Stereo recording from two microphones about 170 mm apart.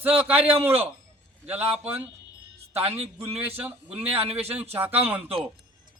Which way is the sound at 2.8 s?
35° right (ahead or behind).